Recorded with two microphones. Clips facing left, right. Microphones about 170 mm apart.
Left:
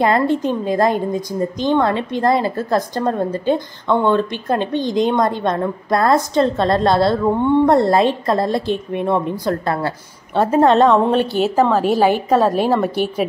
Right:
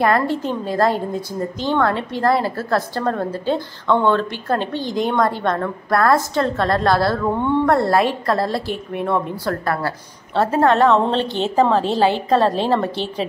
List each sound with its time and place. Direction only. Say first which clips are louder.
0.0 s a woman's voice: left 2 dB; 20° left (ahead or behind)